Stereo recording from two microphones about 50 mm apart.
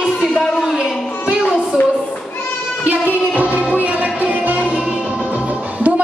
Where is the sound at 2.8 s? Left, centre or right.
Right.